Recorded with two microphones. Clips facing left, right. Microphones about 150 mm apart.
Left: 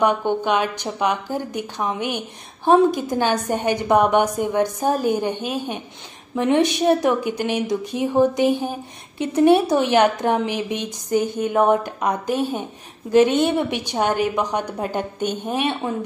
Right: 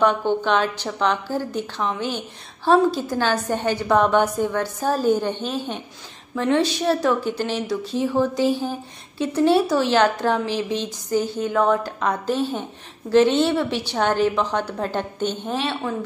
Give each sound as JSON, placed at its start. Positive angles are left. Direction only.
{"t": 0.0, "sound": "a woman's voice", "side_deg": 15}